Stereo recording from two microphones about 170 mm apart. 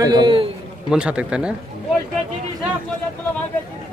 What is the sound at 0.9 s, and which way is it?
Speech, 5° right (ahead or behind).